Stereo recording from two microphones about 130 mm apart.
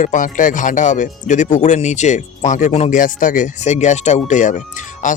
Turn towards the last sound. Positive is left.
turn(degrees=70)  # may be behind; listen again after turning